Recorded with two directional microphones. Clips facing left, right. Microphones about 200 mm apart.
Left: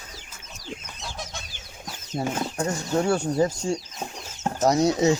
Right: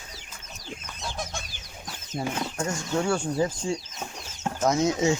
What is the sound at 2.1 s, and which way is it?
Speech, 45° left (ahead or behind).